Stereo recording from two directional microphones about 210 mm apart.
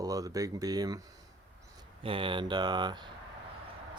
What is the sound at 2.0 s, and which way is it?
Speech, 25° right (ahead or behind).